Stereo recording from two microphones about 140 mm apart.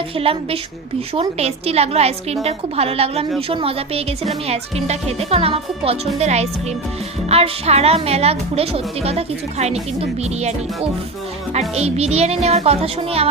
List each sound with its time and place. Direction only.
0.2 s speech: 45° right (ahead or behind)
11.7 s speech: 45° right (ahead or behind)